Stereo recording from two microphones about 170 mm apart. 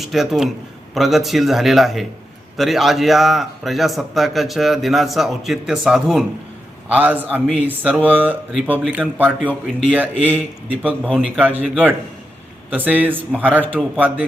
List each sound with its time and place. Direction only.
0.0 s a man's voice: centre (ahead or behind)
9.4 s speech: 10° left (ahead or behind)
9.9 s a man's voice: 10° right (ahead or behind)
11.0 s a man's voice: centre (ahead or behind)
12.7 s a man's voice: 10° right (ahead or behind)